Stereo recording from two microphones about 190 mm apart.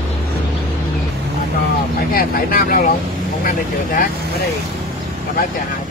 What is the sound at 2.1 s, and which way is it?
Speech, 50° left (ahead or behind).